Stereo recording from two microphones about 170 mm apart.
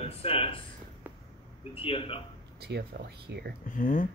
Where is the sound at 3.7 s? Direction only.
50° left (ahead or behind).